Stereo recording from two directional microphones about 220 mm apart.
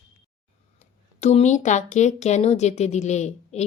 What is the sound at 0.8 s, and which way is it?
Speech, 30° left (ahead or behind).